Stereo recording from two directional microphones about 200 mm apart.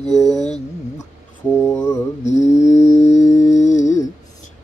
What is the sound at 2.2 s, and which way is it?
Mantra, 35° left (ahead or behind).